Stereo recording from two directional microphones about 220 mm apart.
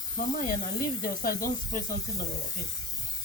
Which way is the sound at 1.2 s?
40° left (ahead or behind).